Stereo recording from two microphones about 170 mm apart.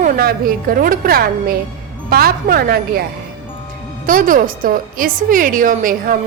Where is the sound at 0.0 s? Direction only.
60° right (ahead or behind).